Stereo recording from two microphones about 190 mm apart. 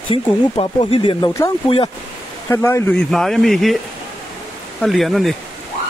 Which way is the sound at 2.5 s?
15° left (ahead or behind).